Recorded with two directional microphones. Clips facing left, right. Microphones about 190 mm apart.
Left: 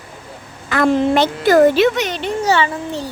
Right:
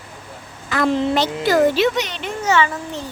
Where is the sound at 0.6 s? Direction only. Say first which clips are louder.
Left 4 dB; 55° left (ahead or behind).